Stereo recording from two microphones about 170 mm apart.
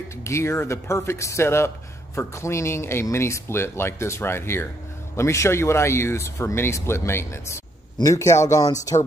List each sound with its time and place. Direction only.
0.2 s speech: 15° left (ahead or behind)